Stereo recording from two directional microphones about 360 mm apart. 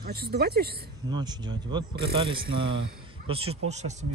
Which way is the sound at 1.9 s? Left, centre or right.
Right.